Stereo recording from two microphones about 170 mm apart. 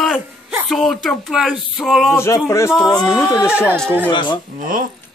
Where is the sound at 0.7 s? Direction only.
Centre (ahead or behind).